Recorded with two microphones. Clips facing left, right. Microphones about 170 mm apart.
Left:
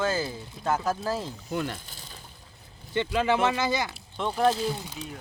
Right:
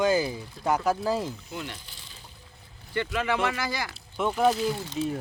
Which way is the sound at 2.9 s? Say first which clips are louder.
Left 3 dB; 30° left (ahead or behind).